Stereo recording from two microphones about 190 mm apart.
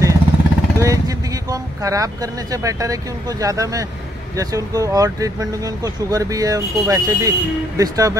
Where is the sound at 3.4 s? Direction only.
15° right (ahead or behind).